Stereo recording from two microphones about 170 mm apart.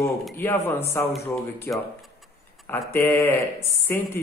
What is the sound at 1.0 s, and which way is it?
A man's voice, 10° left (ahead or behind).